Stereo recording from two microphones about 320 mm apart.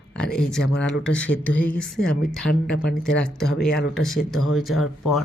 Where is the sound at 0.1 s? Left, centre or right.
Centre.